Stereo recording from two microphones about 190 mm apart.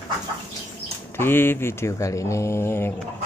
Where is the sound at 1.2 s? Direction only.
10° left (ahead or behind).